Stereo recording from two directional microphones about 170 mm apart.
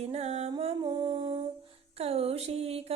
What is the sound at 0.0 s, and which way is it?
Music, 40° right (ahead or behind).